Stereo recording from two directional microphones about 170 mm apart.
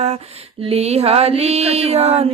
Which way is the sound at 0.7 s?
40° right (ahead or behind).